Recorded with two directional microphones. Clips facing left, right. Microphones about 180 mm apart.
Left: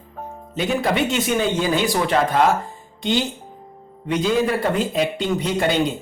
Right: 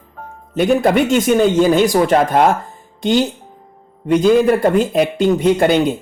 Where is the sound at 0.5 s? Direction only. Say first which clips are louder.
Right 8 dB; 50° right (ahead or behind).